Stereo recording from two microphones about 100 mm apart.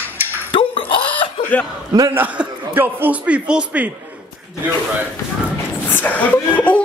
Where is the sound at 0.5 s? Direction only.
55° left (ahead or behind).